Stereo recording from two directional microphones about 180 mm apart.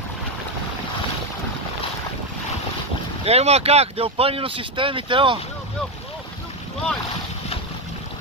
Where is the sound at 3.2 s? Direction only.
35° right (ahead or behind).